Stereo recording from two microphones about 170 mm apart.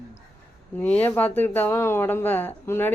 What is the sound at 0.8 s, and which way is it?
A woman's voice, 10° left (ahead or behind).